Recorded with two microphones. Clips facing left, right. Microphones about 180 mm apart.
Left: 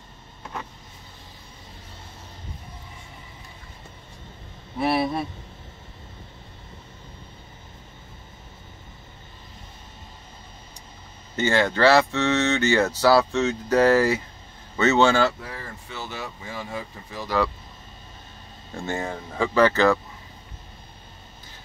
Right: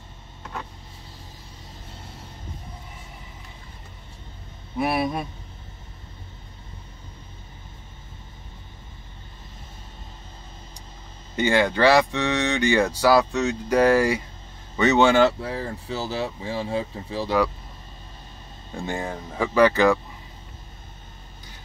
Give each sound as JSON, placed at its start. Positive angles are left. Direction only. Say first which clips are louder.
{"t": 4.7, "sound": "speech", "louder": "left 1 dB", "side_deg": -15}
{"t": 11.3, "sound": "speech", "louder": "right 1 dB", "side_deg": -15}
{"t": 15.4, "sound": "speech", "louder": "right 8 dB", "side_deg": -30}
{"t": 18.9, "sound": "speech", "louder": "left 1 dB", "side_deg": -15}